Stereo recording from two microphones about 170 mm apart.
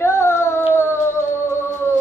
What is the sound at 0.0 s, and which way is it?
Humming, 15° left (ahead or behind).